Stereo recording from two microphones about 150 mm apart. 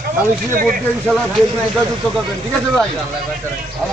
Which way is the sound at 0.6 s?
5° left (ahead or behind).